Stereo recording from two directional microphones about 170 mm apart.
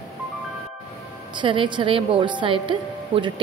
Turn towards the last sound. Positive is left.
turn(degrees=-30)  # may be behind; listen again after turning